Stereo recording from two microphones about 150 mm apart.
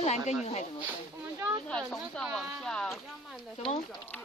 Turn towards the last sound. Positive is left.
turn(degrees=0)  # may be behind; listen again after turning